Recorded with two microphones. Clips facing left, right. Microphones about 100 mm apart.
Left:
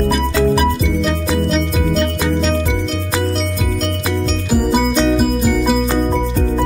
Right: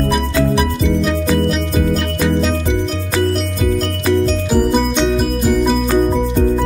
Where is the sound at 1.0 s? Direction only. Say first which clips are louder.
Right 2 dB; centre (ahead or behind).